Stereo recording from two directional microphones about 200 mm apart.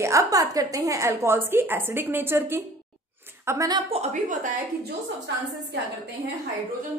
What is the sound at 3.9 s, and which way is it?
Speech, 40° right (ahead or behind).